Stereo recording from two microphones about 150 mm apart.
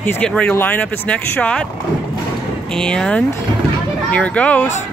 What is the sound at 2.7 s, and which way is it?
Speech, 5° left (ahead or behind).